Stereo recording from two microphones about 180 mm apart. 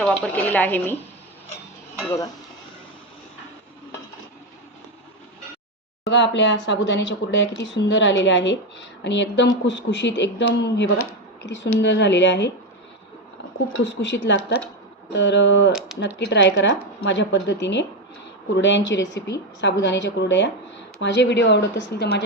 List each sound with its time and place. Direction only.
0.0 s a woman's voice: 5° left (ahead or behind)
2.0 s a woman's voice: 15° left (ahead or behind)
6.1 s speech: 80° left
13.7 s speech: 80° left